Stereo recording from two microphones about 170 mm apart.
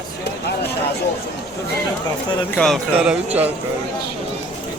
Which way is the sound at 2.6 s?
Centre (ahead or behind).